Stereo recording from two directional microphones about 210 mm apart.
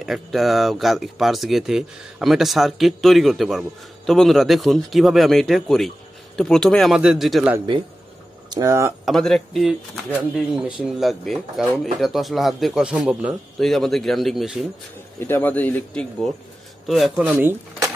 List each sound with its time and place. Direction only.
0.0 s speech: centre (ahead or behind)
7.5 s a man's voice: 20° right (ahead or behind)
9.0 s speech: centre (ahead or behind)
15.1 s speech: 10° left (ahead or behind); by 17.9 s 10° right (ahead or behind)